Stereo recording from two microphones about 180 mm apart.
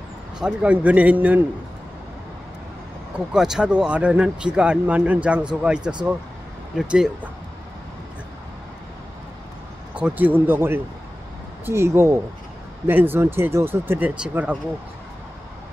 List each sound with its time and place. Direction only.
0.4 s speech: 5° right (ahead or behind)
3.3 s speech: 5° right (ahead or behind)
9.9 s speech: 10° right (ahead or behind)